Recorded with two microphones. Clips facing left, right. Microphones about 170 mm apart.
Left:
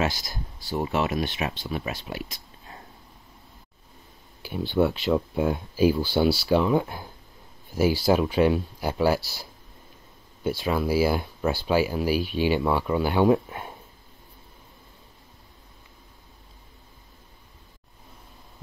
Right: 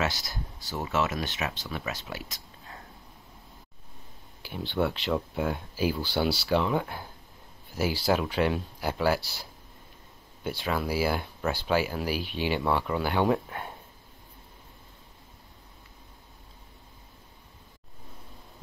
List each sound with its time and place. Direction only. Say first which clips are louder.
0.0 s speech: left 3 dB; 15° left (ahead or behind)
4.4 s speech: left 5 dB; 15° left (ahead or behind)
10.5 s speech: left 5 dB; 10° left (ahead or behind)